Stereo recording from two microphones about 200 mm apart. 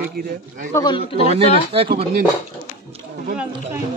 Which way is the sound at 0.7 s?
20° left (ahead or behind).